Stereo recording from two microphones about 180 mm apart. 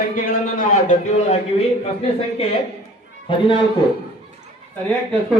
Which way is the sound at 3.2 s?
30° left (ahead or behind).